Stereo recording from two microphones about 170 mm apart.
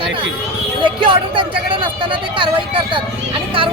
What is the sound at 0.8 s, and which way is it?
Speech, 30° right (ahead or behind).